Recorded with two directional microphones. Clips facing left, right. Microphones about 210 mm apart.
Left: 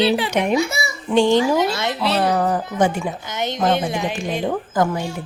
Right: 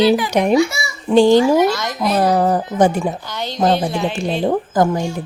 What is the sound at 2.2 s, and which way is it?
Speech, 35° right (ahead or behind).